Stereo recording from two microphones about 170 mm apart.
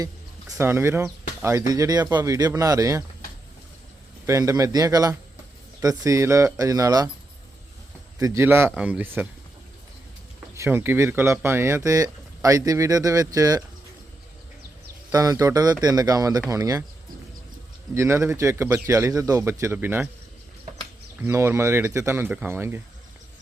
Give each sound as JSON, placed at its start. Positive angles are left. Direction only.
{"t": 0.6, "sound": "speech", "side_deg": -15}
{"t": 4.3, "sound": "speech", "side_deg": -20}
{"t": 8.2, "sound": "speech", "side_deg": -15}
{"t": 10.5, "sound": "speech", "side_deg": -15}
{"t": 15.1, "sound": "speech", "side_deg": -20}
{"t": 17.9, "sound": "speech", "side_deg": -15}
{"t": 21.2, "sound": "speech", "side_deg": -15}